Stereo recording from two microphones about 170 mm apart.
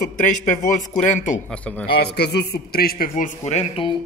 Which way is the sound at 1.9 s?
70° left (ahead or behind).